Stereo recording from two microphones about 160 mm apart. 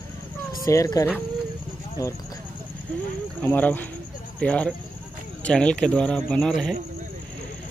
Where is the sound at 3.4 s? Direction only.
10° left (ahead or behind).